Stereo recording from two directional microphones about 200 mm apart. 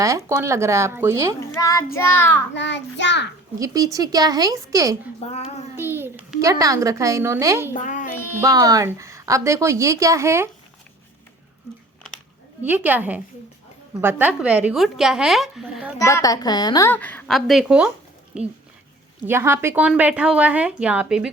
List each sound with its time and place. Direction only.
0.0 s a woman's voice: 15° right (ahead or behind)
1.4 s a woman's voice: 15° left (ahead or behind)
2.5 s a child's voice: 60° left (ahead or behind)
3.6 s a woman's voice: 15° right (ahead or behind)
5.2 s child singing: 30° left (ahead or behind)
5.7 s a woman's voice: 10° right (ahead or behind)
7.8 s a child's voice: 40° left (ahead or behind)
8.4 s a woman's voice: 20° right (ahead or behind)
12.6 s a woman's voice: 10° right (ahead or behind)
16.0 s a woman's voice: 15° left (ahead or behind); by 21.2 s 5° right (ahead or behind)